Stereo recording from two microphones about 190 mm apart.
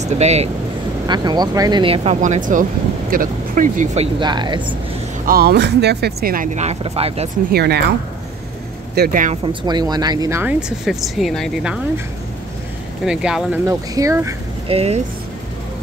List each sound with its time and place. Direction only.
0.0 s speech: 35° right (ahead or behind)
1.0 s speech: 25° right (ahead or behind)
2.1 s speech: 40° right (ahead or behind)
4.2 s speech: 25° right (ahead or behind)
5.2 s speech: 50° right (ahead or behind); by 7.2 s 30° right (ahead or behind)
7.5 s speech: 60° right (ahead or behind)
8.9 s speech: 50° right (ahead or behind)
9.5 s speech: 25° right (ahead or behind)
10.9 s speech: centre (ahead or behind)
13.0 s speech: 5° right (ahead or behind)
13.7 s speech: 15° right (ahead or behind)
14.7 s speech: 35° right (ahead or behind)